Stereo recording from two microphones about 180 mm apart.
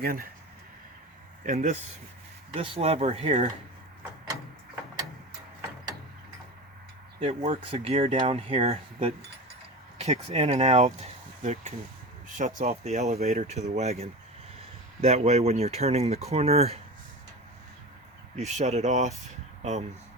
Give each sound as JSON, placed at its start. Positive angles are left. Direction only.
{"t": 0.0, "sound": "speech", "side_deg": -55}
{"t": 1.5, "sound": "speech", "side_deg": -40}
{"t": 7.2, "sound": "speech", "side_deg": -30}
{"t": 18.3, "sound": "speech", "side_deg": -40}